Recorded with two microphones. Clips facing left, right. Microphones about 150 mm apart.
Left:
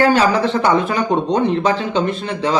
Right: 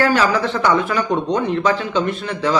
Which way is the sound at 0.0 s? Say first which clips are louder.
Left 3 dB; 25° left (ahead or behind).